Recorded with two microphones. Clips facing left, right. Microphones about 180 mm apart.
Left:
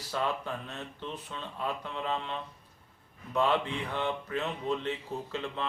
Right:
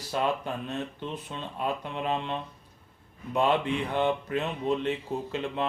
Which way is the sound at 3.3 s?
15° right (ahead or behind).